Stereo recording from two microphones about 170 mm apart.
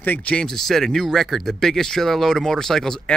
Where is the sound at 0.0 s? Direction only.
10° left (ahead or behind).